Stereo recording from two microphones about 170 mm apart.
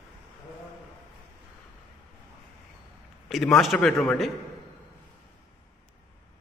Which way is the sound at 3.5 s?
Centre (ahead or behind).